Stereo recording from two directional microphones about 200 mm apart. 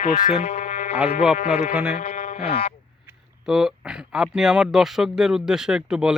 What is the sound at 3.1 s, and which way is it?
Speech, 5° right (ahead or behind).